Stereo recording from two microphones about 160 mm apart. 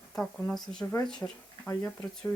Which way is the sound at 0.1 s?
5° left (ahead or behind).